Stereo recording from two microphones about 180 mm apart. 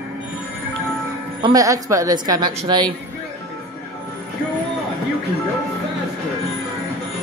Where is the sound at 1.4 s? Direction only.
20° right (ahead or behind).